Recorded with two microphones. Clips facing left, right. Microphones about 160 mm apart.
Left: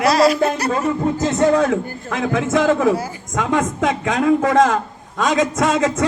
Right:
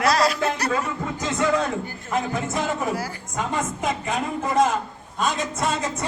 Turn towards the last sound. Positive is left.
turn(degrees=90)